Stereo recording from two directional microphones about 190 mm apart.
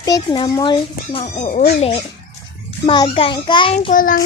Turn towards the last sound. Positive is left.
turn(degrees=45)  # may be behind; listen again after turning